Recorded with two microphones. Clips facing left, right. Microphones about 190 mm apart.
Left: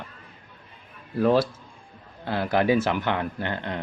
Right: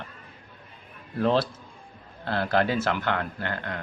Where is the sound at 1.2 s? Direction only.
10° left (ahead or behind).